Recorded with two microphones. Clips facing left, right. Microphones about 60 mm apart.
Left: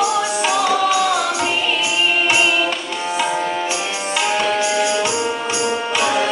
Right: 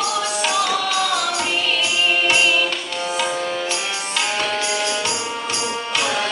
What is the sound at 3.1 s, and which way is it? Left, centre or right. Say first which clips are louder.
Music: left 4 dB; centre.